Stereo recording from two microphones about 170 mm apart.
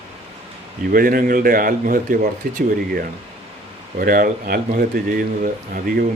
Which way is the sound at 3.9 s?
55° right (ahead or behind).